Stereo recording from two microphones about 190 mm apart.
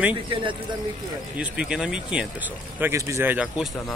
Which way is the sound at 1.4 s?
5° right (ahead or behind).